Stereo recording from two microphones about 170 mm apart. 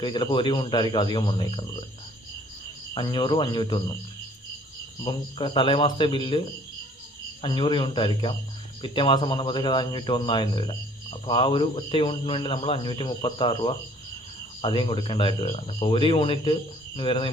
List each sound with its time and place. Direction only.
0.0 s a man's voice: 25° left (ahead or behind)
2.9 s a man's voice: 25° left (ahead or behind)
5.0 s a man's voice: 25° left (ahead or behind)
7.4 s a man's voice: 30° left (ahead or behind)